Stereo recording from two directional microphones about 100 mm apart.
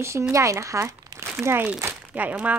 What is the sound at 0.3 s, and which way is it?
Speech, 30° right (ahead or behind).